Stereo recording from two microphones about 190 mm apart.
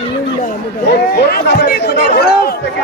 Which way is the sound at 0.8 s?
60° left (ahead or behind).